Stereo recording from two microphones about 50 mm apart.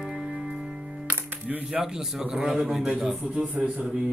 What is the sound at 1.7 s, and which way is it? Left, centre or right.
Speech, centre.